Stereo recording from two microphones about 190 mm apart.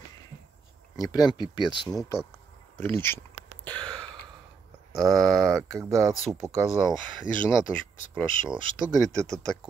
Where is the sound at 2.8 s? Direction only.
10° left (ahead or behind).